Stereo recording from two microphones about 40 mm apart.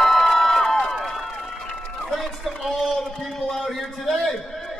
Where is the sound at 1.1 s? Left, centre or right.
Centre.